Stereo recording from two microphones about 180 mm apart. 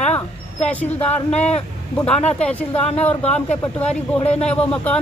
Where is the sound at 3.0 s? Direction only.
10° left (ahead or behind).